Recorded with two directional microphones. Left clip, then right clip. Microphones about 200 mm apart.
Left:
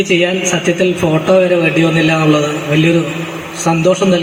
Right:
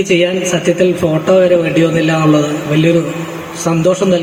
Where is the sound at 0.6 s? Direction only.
30° right (ahead or behind).